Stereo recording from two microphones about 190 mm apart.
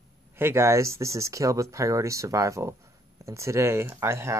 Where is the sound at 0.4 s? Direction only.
15° right (ahead or behind).